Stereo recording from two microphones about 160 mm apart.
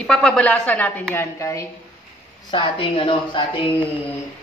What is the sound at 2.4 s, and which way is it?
Speech, 30° left (ahead or behind).